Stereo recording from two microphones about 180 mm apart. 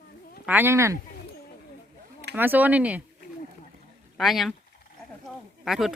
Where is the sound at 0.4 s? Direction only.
10° right (ahead or behind).